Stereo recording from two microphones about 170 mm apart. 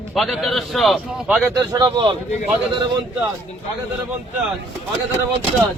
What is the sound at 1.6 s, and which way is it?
Speech, 25° right (ahead or behind).